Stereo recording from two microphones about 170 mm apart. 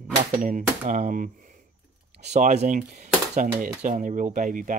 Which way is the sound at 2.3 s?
40° right (ahead or behind).